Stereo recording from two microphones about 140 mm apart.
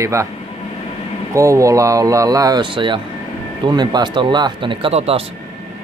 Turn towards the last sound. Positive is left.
turn(degrees=-45)  # may be behind; listen again after turning